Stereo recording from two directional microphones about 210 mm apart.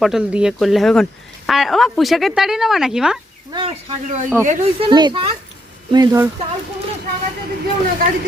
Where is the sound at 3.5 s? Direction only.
25° right (ahead or behind).